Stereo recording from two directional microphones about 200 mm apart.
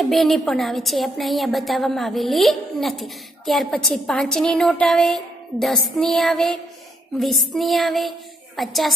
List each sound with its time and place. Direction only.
0.0 s a woman's voice: centre (ahead or behind)